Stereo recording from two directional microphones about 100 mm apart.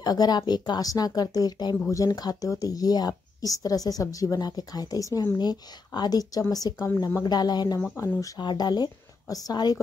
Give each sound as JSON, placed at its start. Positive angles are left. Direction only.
{"t": 0.0, "sound": "a woman's voice", "side_deg": 40}
{"t": 8.0, "sound": "a woman's voice", "side_deg": 30}
{"t": 8.4, "sound": "speech", "side_deg": 45}